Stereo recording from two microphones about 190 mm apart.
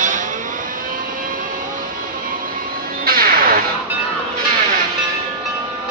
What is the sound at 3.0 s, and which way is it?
Music, 50° right (ahead or behind).